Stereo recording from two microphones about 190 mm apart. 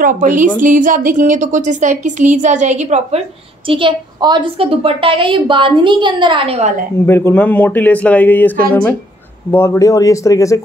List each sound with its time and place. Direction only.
0.0 s a woman's voice: 45° right (ahead or behind)
7.1 s speech: 10° left (ahead or behind)